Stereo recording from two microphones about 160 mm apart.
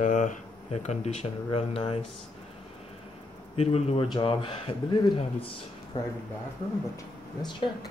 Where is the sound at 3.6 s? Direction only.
40° left (ahead or behind); by 6.1 s 25° left (ahead or behind).